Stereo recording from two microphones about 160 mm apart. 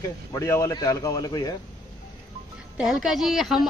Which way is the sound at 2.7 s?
5° right (ahead or behind).